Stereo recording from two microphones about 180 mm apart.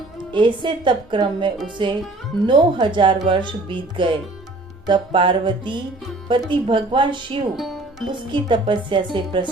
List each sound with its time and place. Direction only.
0.3 s a woman's voice: 25° right (ahead or behind)
7.5 s music: centre (ahead or behind)
8.3 s a woman's voice: 25° right (ahead or behind)